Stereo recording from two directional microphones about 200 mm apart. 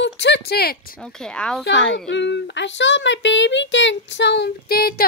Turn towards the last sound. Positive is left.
turn(degrees=50)  # may be behind; listen again after turning